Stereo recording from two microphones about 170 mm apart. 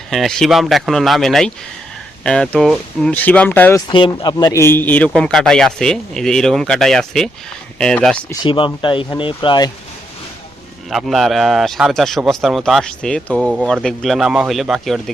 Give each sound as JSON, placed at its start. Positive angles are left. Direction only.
{"t": 0.1, "sound": "speech", "side_deg": 0}
{"t": 3.8, "sound": "speech", "side_deg": 30}
{"t": 8.4, "sound": "speech", "side_deg": 30}
{"t": 10.8, "sound": "speech", "side_deg": 0}